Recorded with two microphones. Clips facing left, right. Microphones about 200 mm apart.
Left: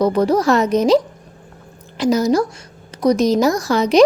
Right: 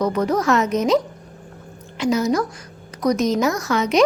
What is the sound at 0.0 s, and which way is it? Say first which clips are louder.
A woman's voice: left 4 dB; 30° left (ahead or behind).